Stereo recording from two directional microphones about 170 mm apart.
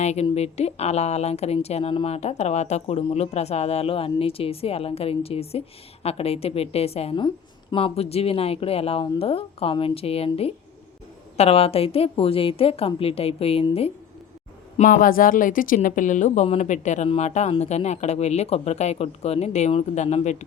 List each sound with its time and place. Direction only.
0.0 s a woman's voice: 40° left (ahead or behind)
14.8 s a woman's voice: 55° left (ahead or behind)